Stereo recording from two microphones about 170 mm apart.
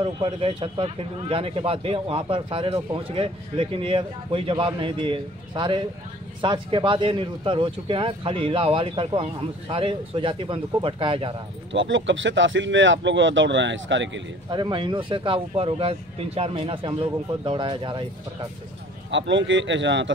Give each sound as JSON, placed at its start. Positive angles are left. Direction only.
{"t": 0.0, "sound": "speech", "side_deg": -30}
{"t": 11.7, "sound": "speech", "side_deg": -90}
{"t": 14.5, "sound": "speech", "side_deg": -30}
{"t": 19.0, "sound": "speech", "side_deg": -90}